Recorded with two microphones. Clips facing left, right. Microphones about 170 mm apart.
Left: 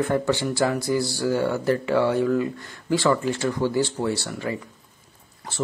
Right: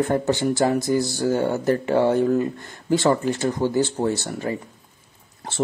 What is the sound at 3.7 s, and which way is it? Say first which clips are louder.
Speech: right 2 dB; 45° right (ahead or behind).